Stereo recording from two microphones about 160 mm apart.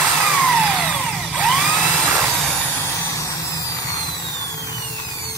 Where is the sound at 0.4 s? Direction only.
Centre (ahead or behind).